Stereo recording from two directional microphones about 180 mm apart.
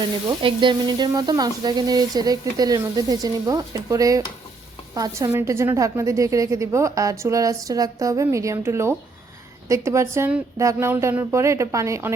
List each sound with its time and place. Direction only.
0.3 s sizzle: 25° right (ahead or behind)
4.9 s a woman's voice: 20° right (ahead or behind)